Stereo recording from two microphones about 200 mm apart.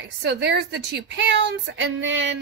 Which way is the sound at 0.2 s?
60° right (ahead or behind).